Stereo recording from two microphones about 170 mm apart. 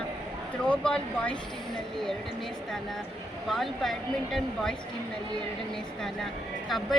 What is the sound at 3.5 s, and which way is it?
Speech, centre (ahead or behind).